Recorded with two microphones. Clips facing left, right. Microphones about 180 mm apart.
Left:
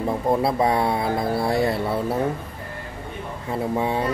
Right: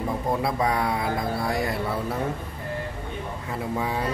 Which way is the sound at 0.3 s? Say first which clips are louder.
Left 5 dB; 30° left (ahead or behind).